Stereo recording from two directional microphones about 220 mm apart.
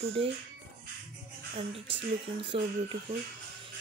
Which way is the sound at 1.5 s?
25° right (ahead or behind).